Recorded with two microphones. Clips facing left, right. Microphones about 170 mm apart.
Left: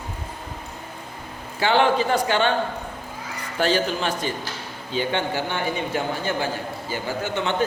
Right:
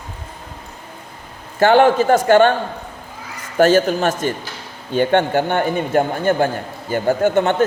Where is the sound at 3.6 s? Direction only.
45° right (ahead or behind).